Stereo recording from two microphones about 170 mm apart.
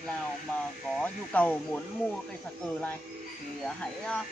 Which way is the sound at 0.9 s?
10° left (ahead or behind).